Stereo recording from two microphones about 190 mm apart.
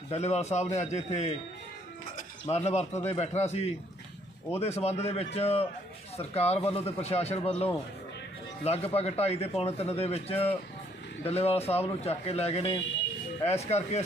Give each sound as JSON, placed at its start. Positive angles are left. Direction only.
{"t": 0.1, "sound": "a man's voice", "side_deg": 35}